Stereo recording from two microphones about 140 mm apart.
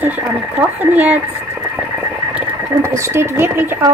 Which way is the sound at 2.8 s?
20° right (ahead or behind).